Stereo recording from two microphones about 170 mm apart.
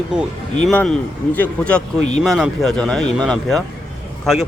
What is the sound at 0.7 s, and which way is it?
Speech, 10° left (ahead or behind).